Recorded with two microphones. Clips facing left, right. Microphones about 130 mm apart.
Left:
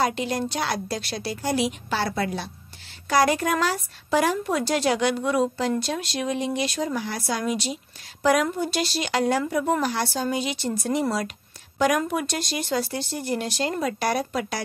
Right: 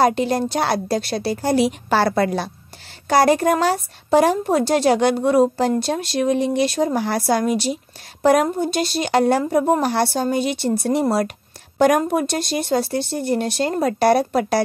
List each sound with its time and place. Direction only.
0.0 s a woman's voice: 40° right (ahead or behind)
2.0 s speech: 65° right (ahead or behind)
3.1 s a woman's voice: 35° right (ahead or behind); by 9.4 s 55° right (ahead or behind)
9.4 s speech: 40° right (ahead or behind); by 11.3 s 60° right (ahead or behind)
12.1 s a woman's voice: 45° right (ahead or behind)